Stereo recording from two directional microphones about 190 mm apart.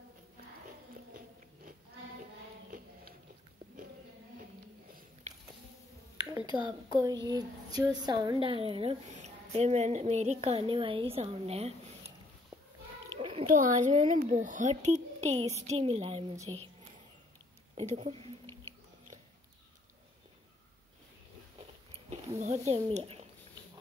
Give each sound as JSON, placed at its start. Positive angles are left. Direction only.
{"t": 1.1, "sound": "biting", "side_deg": -45}
{"t": 6.6, "sound": "speech", "side_deg": -20}
{"t": 13.2, "sound": "a sound", "side_deg": -30}
{"t": 13.5, "sound": "speech", "side_deg": -45}
{"t": 17.9, "sound": "speech", "side_deg": -30}
{"t": 18.5, "sound": "chewing", "side_deg": 15}
{"t": 22.1, "sound": "speech", "side_deg": -35}